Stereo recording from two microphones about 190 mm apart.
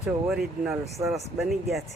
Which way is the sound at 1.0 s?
20° right (ahead or behind).